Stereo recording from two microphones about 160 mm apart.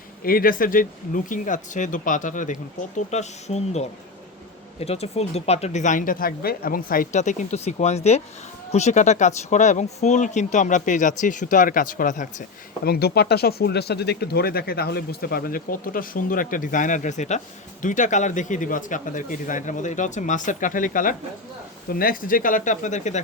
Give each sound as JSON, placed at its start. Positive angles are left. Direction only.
{"t": 0.2, "sound": "speech", "side_deg": 65}
{"t": 12.8, "sound": "speech", "side_deg": 80}